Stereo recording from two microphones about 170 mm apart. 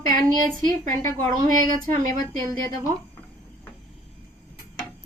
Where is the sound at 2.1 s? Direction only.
20° left (ahead or behind).